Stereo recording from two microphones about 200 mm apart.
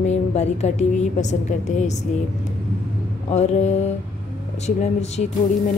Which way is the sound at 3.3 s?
35° left (ahead or behind).